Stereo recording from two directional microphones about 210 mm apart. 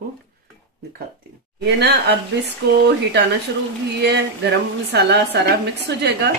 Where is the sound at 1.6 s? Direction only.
55° right (ahead or behind).